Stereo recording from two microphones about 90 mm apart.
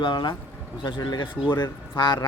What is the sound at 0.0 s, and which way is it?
Speech, 55° left (ahead or behind).